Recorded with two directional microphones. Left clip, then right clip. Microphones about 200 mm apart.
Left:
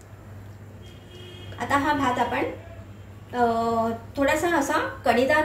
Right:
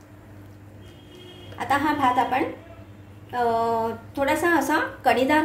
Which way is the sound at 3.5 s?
50° right (ahead or behind).